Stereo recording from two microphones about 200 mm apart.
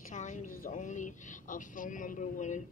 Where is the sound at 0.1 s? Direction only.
40° left (ahead or behind).